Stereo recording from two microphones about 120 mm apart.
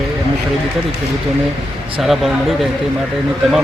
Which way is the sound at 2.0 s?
Centre (ahead or behind).